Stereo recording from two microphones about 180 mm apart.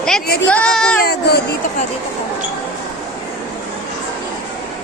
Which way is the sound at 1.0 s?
60° left (ahead or behind).